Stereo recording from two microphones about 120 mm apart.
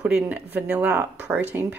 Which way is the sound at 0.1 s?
10° right (ahead or behind).